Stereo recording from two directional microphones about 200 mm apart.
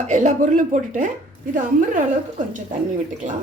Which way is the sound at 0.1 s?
40° right (ahead or behind).